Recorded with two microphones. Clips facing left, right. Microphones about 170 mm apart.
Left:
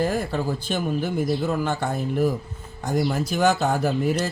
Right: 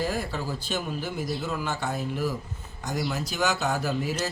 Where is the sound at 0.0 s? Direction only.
50° left (ahead or behind).